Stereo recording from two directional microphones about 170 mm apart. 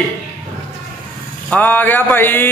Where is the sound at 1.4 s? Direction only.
10° left (ahead or behind).